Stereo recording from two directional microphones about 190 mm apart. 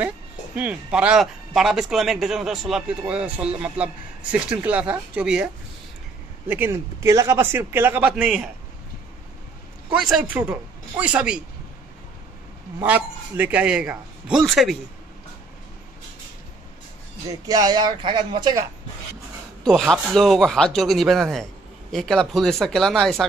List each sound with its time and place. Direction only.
0.6 s a man's voice: 5° right (ahead or behind)
9.9 s a man's voice: centre (ahead or behind)
12.7 s speech: 10° right (ahead or behind)
17.3 s speech: 20° right (ahead or behind)
19.6 s speech: centre (ahead or behind)